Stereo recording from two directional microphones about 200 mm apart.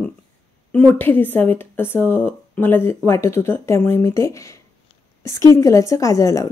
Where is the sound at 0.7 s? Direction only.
10° left (ahead or behind).